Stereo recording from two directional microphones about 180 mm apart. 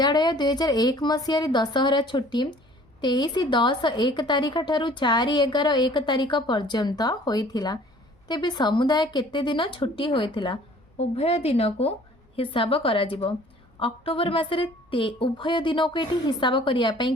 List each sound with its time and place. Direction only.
0.0 s a woman's voice: 25° left (ahead or behind)